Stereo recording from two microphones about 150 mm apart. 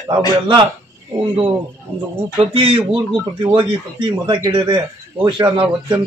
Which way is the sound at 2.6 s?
40° right (ahead or behind).